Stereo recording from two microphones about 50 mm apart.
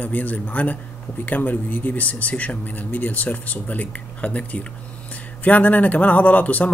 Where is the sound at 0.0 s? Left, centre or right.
Left.